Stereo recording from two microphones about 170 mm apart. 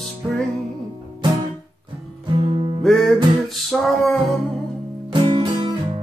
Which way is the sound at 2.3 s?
30° right (ahead or behind).